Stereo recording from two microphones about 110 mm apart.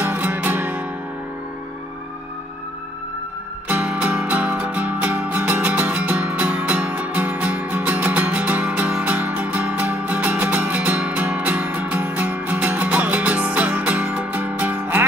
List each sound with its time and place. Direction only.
0.0 s music: 15° right (ahead or behind)
3.6 s music: 15° right (ahead or behind)